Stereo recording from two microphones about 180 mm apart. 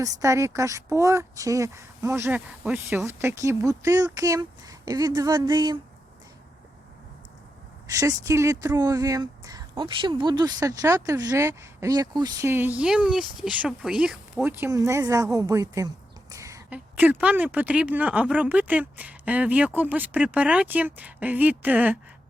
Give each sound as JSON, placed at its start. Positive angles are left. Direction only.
{"t": 0.0, "sound": "speech", "side_deg": -15}
{"t": 7.9, "sound": "speech", "side_deg": -20}